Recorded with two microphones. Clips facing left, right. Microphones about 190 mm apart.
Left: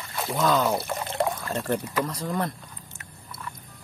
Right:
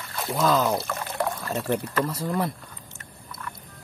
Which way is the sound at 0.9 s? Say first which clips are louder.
Left 2 dB; 20° left (ahead or behind).